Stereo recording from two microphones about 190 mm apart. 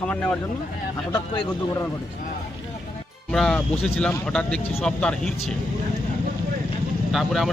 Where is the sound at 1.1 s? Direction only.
20° left (ahead or behind).